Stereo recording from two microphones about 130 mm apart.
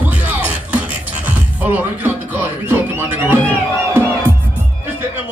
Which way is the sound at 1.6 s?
15° right (ahead or behind).